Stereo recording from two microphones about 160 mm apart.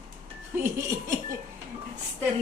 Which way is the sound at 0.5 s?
15° right (ahead or behind).